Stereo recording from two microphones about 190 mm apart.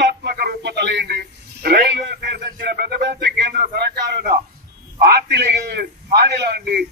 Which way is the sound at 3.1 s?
65° right (ahead or behind).